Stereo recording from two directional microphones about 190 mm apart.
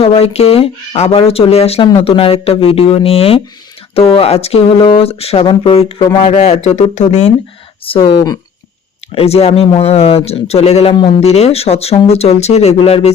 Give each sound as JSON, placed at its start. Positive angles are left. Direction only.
{"t": 0.0, "sound": "speech", "side_deg": 30}
{"t": 9.1, "sound": "speech", "side_deg": 30}